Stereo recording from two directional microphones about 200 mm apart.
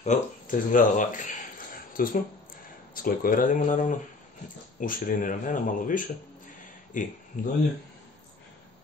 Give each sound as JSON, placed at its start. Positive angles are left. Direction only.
{"t": 0.0, "sound": "speech", "side_deg": 40}